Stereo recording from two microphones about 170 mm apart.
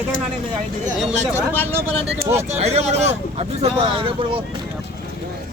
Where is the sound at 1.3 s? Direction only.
10° left (ahead or behind).